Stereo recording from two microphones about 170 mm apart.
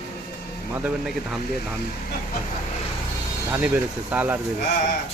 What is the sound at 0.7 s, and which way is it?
Speech, 5° right (ahead or behind).